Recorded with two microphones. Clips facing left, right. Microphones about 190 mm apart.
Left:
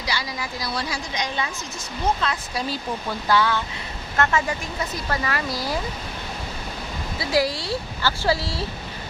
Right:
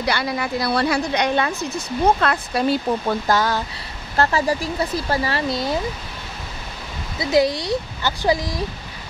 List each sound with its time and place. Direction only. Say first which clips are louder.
0.0 s a woman's voice: right 7 dB; 60° right (ahead or behind); by 5.8 s 25° right (ahead or behind)
7.2 s speech: right 5 dB; 20° right (ahead or behind)